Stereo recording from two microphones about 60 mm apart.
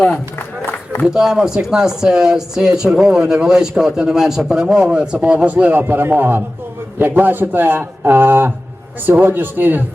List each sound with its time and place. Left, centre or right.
0.3 s run: left
1.0 s speech: centre
5.8 s a man's voice: right